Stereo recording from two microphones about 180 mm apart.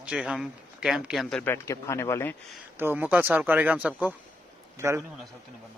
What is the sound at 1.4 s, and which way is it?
Speech, 15° left (ahead or behind).